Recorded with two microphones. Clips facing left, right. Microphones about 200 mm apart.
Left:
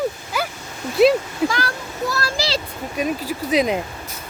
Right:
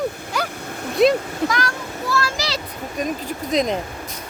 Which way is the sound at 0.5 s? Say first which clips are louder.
Right 2 dB; 55° right (ahead or behind).